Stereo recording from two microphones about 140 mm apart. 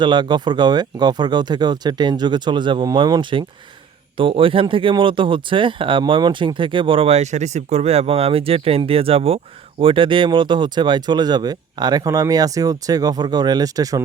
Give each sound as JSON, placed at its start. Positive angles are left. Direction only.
{"t": 0.0, "sound": "speech", "side_deg": -35}